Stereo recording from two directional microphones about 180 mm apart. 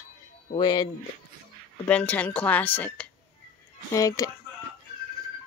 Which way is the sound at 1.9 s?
10° left (ahead or behind).